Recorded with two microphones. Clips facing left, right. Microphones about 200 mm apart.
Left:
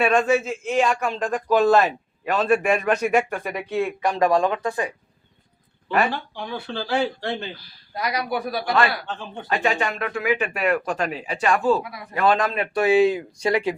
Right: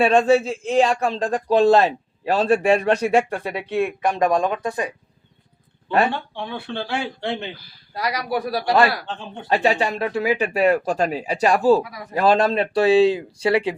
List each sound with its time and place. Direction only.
0.0 s speech: 30° right (ahead or behind)
5.9 s speech: 30° right (ahead or behind)
8.0 s speech: 35° right (ahead or behind)